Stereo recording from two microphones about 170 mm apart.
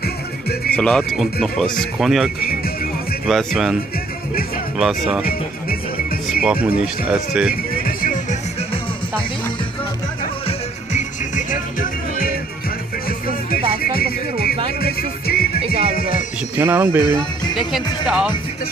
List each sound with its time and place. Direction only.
0.0 s music: 65° left (ahead or behind)
0.7 s speech: 5° left (ahead or behind)
4.7 s speech: centre (ahead or behind)
6.4 s speech: 5° right (ahead or behind)
7.8 s music: 55° left (ahead or behind)
10.4 s music: 45° left (ahead or behind)
13.5 s music: 60° left (ahead or behind)
16.5 s speech: 10° right (ahead or behind)
17.6 s speech: centre (ahead or behind)